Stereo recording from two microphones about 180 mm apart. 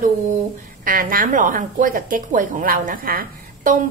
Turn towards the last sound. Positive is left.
turn(degrees=-50)  # may be behind; listen again after turning